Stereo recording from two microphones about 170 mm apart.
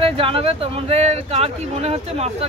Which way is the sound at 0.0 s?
30° right (ahead or behind).